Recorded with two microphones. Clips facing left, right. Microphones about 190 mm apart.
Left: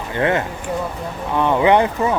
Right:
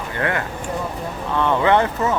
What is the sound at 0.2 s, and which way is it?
Speech, 20° left (ahead or behind).